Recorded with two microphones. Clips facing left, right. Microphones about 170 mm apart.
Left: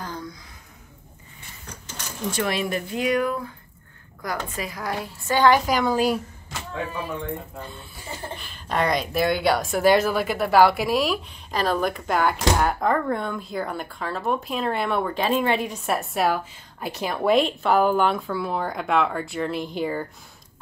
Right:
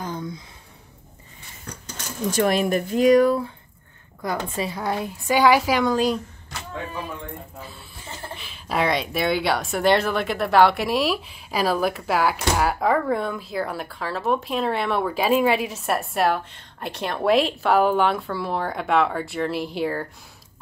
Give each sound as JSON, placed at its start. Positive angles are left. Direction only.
{"t": 0.0, "sound": "a sound", "side_deg": -20}
{"t": 2.3, "sound": "a woman's voice", "side_deg": -45}
{"t": 5.2, "sound": "speech", "side_deg": -10}
{"t": 8.4, "sound": "speech", "side_deg": -5}